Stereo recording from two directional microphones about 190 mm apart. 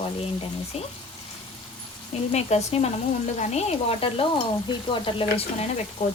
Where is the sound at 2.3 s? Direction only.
35° left (ahead or behind).